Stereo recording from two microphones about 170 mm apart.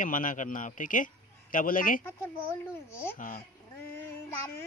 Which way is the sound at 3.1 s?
50° left (ahead or behind).